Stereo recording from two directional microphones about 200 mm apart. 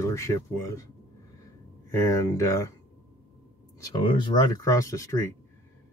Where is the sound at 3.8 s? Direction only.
25° left (ahead or behind).